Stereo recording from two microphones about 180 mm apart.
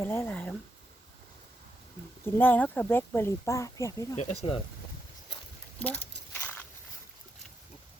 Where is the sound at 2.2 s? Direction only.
10° left (ahead or behind).